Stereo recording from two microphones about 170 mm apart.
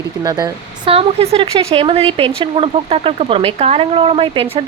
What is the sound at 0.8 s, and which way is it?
Speech, 35° right (ahead or behind).